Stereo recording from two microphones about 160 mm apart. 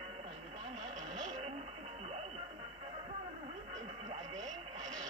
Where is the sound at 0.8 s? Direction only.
50° right (ahead or behind).